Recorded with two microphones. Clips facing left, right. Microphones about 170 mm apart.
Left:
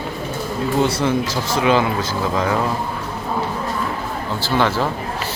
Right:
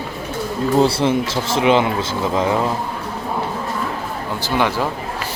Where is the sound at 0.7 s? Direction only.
30° right (ahead or behind).